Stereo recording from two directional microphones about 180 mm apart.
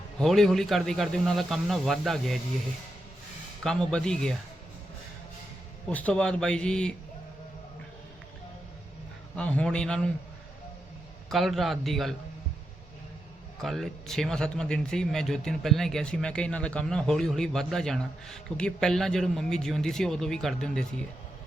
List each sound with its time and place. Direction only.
0.2 s speech: centre (ahead or behind)
3.6 s speech: 5° left (ahead or behind)
5.9 s speech: 10° left (ahead or behind)
9.3 s speech: 5° left (ahead or behind)
11.3 s speech: centre (ahead or behind)
13.6 s speech: centre (ahead or behind)